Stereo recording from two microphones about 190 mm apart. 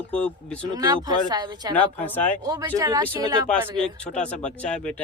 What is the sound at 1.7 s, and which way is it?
Speech, 10° left (ahead or behind).